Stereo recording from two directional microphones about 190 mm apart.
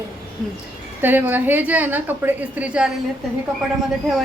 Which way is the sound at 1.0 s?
10° right (ahead or behind).